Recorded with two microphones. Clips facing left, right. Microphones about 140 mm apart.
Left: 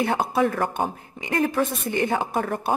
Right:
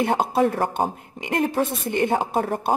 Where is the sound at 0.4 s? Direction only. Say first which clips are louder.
Right 1 dB; 35° right (ahead or behind).